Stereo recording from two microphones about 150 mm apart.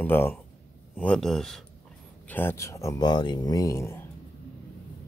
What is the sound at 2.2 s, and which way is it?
Speech, 15° left (ahead or behind).